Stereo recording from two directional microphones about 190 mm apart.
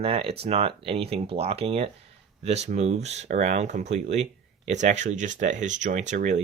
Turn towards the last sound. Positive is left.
turn(degrees=-40)  # may be behind; listen again after turning